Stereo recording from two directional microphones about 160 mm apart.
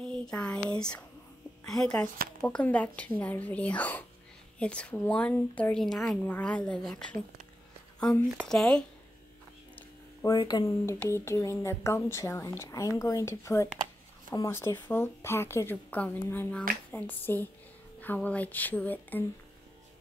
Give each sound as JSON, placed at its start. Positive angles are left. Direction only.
{"t": 0.1, "sound": "a woman's voice", "side_deg": 5}
{"t": 8.5, "sound": "speech", "side_deg": 5}
{"t": 10.2, "sound": "a woman's voice", "side_deg": 25}